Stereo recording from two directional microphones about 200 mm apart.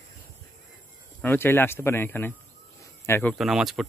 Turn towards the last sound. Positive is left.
turn(degrees=0)  # may be behind; listen again after turning